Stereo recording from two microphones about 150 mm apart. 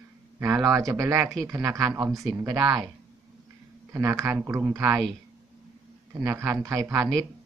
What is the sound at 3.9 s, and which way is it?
Speech, 20° right (ahead or behind).